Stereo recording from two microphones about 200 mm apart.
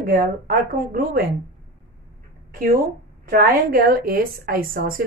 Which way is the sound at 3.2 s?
45° right (ahead or behind).